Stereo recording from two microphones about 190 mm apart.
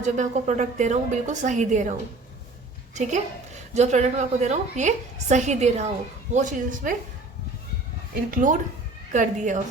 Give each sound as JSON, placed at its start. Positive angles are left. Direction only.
{"t": 0.0, "sound": "a woman's voice", "side_deg": -40}
{"t": 2.9, "sound": "a woman's voice", "side_deg": -40}
{"t": 8.3, "sound": "a woman's voice", "side_deg": -45}